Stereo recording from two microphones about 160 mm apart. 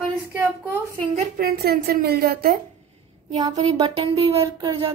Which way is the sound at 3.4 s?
45° right (ahead or behind).